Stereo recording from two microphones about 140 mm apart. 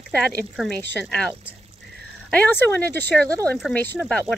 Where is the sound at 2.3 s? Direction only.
10° left (ahead or behind).